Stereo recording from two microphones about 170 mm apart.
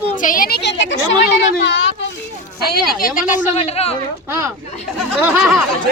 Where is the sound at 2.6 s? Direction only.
60° left (ahead or behind).